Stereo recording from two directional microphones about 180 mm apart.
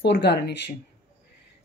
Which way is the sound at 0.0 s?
70° left (ahead or behind).